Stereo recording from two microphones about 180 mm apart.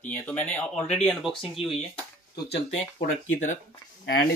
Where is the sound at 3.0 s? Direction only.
45° left (ahead or behind).